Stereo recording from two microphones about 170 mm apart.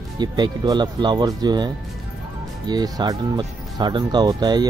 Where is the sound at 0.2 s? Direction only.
25° right (ahead or behind).